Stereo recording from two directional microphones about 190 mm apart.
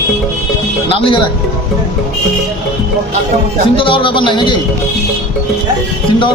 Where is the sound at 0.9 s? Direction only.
30° left (ahead or behind).